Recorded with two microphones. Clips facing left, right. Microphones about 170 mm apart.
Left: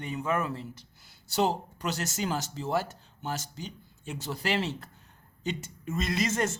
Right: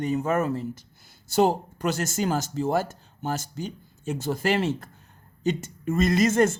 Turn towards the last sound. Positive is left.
turn(degrees=-50)  # may be behind; listen again after turning